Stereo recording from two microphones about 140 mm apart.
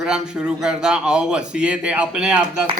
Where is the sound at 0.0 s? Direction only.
5° right (ahead or behind).